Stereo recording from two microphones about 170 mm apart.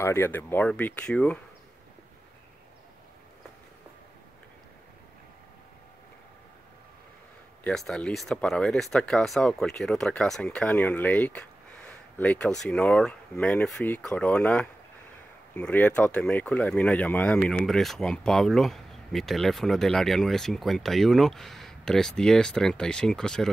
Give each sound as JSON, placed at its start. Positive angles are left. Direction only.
{"t": 0.0, "sound": "speech", "side_deg": 15}
{"t": 7.6, "sound": "speech", "side_deg": 5}